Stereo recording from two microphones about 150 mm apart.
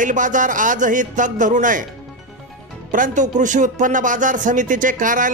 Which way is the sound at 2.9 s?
60° right (ahead or behind).